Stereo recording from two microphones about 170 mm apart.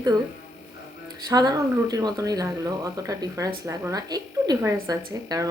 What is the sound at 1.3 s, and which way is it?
Speech, 20° right (ahead or behind).